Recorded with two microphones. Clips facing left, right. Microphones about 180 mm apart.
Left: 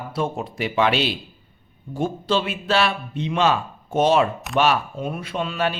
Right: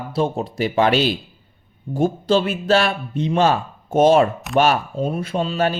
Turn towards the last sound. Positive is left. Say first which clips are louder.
# right 4 dB
turn(degrees=-35)  # may be behind; listen again after turning